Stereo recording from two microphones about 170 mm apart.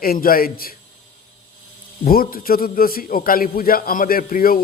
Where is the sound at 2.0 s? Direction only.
60° left (ahead or behind).